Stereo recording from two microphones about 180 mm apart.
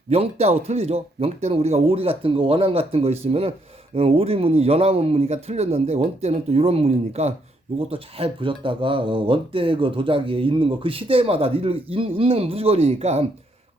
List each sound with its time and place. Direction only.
0.1 s speech: 35° right (ahead or behind)